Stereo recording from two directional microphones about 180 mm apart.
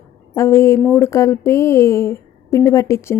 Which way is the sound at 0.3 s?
15° left (ahead or behind).